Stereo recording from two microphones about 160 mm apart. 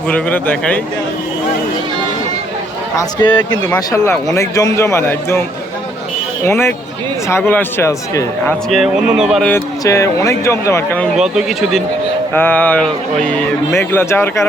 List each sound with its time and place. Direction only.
0.1 s a man's voice: 10° left (ahead or behind)
3.0 s a man's voice: 25° left (ahead or behind)
6.4 s a man's voice: 15° left (ahead or behind)
8.7 s speech: 5° right (ahead or behind)
9.5 s a man's voice: 20° left (ahead or behind)
11.2 s speech: 5° right (ahead or behind)
12.3 s a man's voice: 10° left (ahead or behind)